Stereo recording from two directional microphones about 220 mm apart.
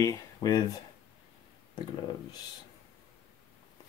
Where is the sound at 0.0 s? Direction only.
15° left (ahead or behind).